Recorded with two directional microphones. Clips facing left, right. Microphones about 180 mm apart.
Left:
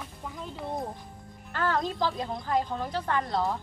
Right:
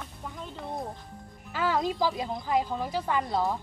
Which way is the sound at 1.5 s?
10° right (ahead or behind).